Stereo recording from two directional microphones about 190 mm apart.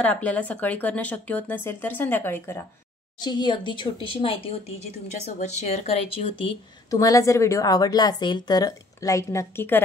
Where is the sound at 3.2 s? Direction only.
25° left (ahead or behind).